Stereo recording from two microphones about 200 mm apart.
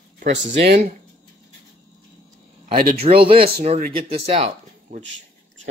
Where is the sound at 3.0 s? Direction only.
30° right (ahead or behind).